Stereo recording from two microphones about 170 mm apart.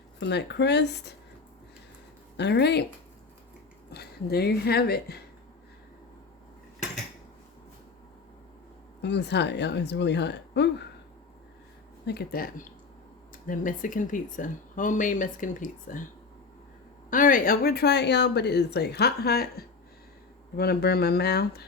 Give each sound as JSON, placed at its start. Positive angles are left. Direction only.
{"t": 0.2, "sound": "speech", "side_deg": 80}
{"t": 2.4, "sound": "speech", "side_deg": 80}
{"t": 3.9, "sound": "speech", "side_deg": 70}
{"t": 9.0, "sound": "speech", "side_deg": 90}
{"t": 12.0, "sound": "speech", "side_deg": 65}
{"t": 17.1, "sound": "speech", "side_deg": 50}